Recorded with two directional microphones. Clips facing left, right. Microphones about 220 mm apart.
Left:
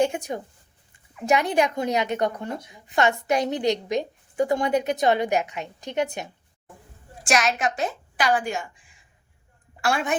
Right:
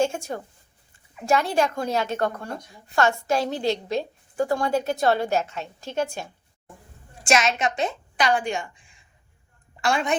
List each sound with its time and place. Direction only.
0.0 s a woman's voice: 15° left (ahead or behind)
7.3 s a woman's voice: centre (ahead or behind)